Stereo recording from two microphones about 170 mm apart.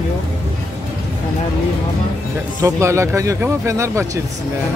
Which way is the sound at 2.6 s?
15° right (ahead or behind).